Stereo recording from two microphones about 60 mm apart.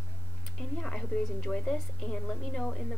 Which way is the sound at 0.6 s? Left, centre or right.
Centre.